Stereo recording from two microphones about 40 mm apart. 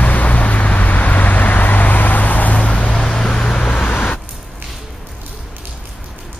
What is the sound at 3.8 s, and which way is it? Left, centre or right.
Vehicle, left.